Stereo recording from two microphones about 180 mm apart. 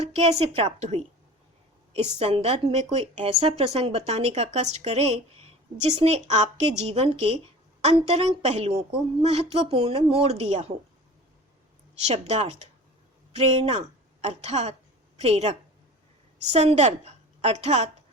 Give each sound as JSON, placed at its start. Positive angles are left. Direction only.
{"t": 0.0, "sound": "a woman's voice", "side_deg": -35}
{"t": 12.0, "sound": "a woman's voice", "side_deg": -40}